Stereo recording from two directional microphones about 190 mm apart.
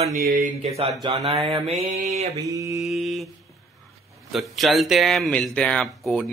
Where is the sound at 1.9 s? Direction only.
35° right (ahead or behind).